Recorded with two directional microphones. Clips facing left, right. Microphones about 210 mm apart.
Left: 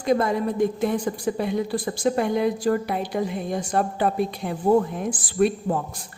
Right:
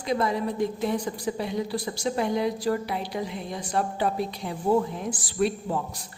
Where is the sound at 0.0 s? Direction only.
50° left (ahead or behind).